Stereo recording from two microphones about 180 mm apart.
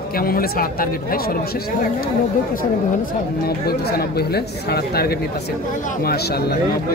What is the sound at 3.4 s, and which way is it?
Speech, 60° left (ahead or behind).